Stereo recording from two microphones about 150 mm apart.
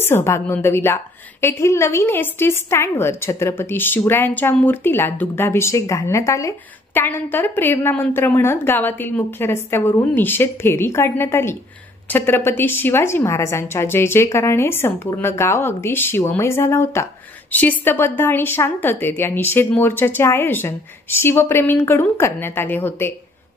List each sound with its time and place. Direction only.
0.0 s a woman's voice: 15° left (ahead or behind)